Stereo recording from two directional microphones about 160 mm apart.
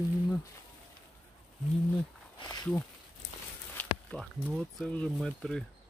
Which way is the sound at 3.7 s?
10° left (ahead or behind).